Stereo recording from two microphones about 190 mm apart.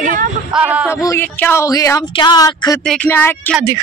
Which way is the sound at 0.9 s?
15° left (ahead or behind).